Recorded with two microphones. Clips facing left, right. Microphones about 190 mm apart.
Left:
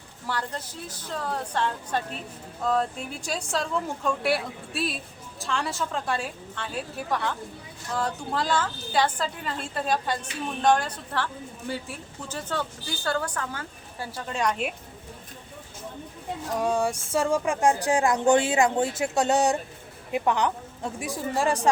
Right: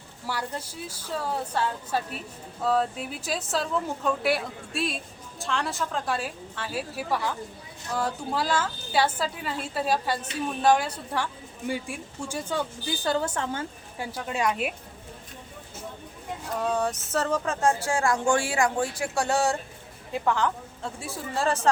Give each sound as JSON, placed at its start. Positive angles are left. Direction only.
{"t": 0.3, "sound": "a woman's voice", "side_deg": -10}
{"t": 14.3, "sound": "a woman's voice", "side_deg": -5}
{"t": 16.6, "sound": "speech", "side_deg": 10}